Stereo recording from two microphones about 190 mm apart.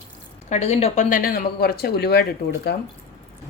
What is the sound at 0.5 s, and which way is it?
Speech, 35° left (ahead or behind).